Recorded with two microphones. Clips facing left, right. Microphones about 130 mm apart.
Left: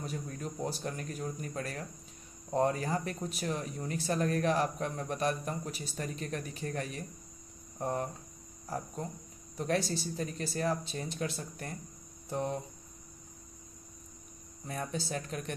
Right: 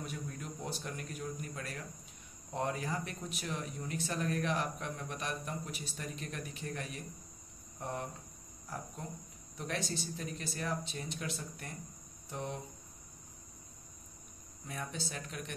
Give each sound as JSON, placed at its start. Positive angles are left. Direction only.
{"t": 0.0, "sound": "speech", "side_deg": 35}
{"t": 9.6, "sound": "speech", "side_deg": 35}
{"t": 14.7, "sound": "speech", "side_deg": 40}